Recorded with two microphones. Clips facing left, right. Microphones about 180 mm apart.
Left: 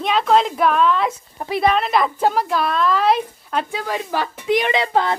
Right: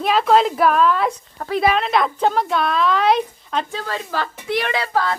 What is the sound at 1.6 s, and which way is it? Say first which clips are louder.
A woman's voice: left 1 dB; centre (ahead or behind).